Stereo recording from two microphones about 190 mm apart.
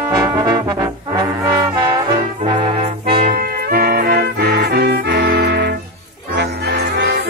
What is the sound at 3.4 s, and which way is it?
Music, 50° right (ahead or behind).